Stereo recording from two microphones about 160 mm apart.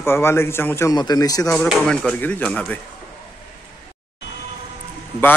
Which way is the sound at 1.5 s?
5° left (ahead or behind).